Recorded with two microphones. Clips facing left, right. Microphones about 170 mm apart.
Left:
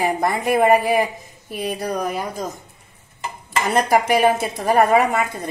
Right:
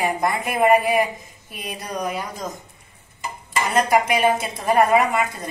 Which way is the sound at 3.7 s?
35° left (ahead or behind).